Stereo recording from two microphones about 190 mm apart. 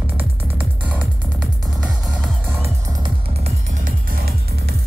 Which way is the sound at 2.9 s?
30° right (ahead or behind).